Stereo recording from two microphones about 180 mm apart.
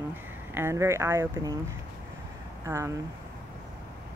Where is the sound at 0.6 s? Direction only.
15° right (ahead or behind).